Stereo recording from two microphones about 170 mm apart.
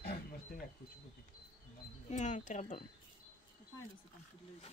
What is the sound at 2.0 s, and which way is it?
Speech, 45° left (ahead or behind).